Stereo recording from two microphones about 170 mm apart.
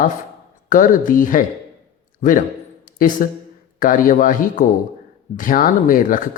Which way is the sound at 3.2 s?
55° left (ahead or behind).